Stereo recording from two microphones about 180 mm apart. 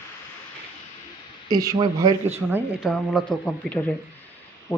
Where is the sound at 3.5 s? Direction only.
10° left (ahead or behind).